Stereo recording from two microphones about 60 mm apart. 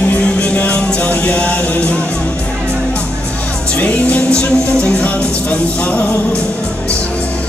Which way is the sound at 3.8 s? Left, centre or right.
Left.